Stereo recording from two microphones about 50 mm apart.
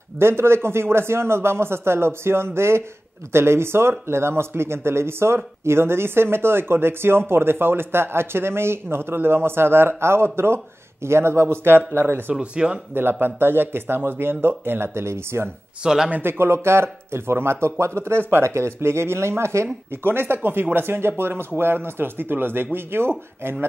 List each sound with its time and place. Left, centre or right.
0.2 s speech: right
12.4 s speech: centre
13.1 s speech: right
15.8 s speech: centre
16.1 s speech: right
20.0 s speech: right